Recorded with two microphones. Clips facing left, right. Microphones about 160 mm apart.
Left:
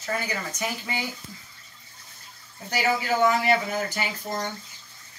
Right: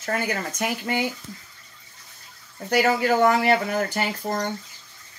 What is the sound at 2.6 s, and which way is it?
Speech, 60° right (ahead or behind).